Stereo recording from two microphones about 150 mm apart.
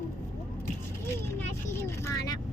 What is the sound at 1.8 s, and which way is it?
Vehicle, 20° left (ahead or behind).